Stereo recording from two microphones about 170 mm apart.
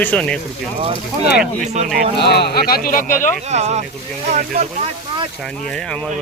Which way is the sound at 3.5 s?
40° right (ahead or behind).